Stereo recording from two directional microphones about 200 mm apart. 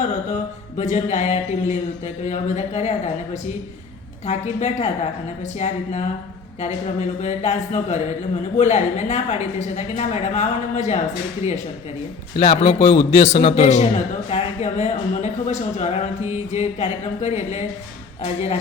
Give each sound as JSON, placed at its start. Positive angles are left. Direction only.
{"t": 0.8, "sound": "a man's voice", "side_deg": 35}
{"t": 4.3, "sound": "a man's voice", "side_deg": 35}
{"t": 7.2, "sound": "a man's voice", "side_deg": 35}
{"t": 12.4, "sound": "a man's voice", "side_deg": 30}